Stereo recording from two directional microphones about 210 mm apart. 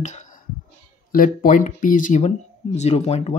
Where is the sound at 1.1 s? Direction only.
40° left (ahead or behind).